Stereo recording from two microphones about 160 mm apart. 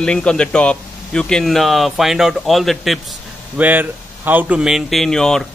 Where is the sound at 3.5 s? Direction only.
10° right (ahead or behind).